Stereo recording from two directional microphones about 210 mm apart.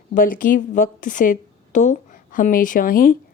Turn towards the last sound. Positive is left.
turn(degrees=40)  # may be behind; listen again after turning